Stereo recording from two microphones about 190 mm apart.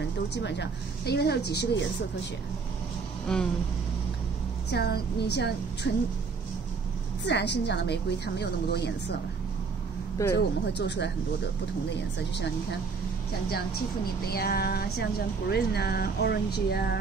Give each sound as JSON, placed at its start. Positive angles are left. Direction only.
{"t": 0.3, "sound": "speech", "side_deg": 65}
{"t": 3.3, "sound": "a sound", "side_deg": 5}
{"t": 4.6, "sound": "speech", "side_deg": 60}
{"t": 7.2, "sound": "speech", "side_deg": 65}
{"t": 10.2, "sound": "speech", "side_deg": 15}
{"t": 10.7, "sound": "speech", "side_deg": 65}
{"t": 14.2, "sound": "speech", "side_deg": 55}